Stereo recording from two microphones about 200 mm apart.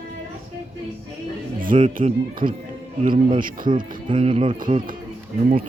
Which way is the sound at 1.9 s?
45° right (ahead or behind).